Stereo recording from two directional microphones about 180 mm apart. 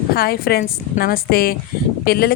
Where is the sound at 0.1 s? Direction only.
55° left (ahead or behind).